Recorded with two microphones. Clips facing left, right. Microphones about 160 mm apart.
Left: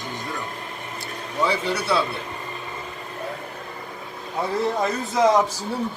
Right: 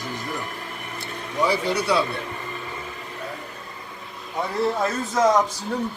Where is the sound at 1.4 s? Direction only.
10° right (ahead or behind).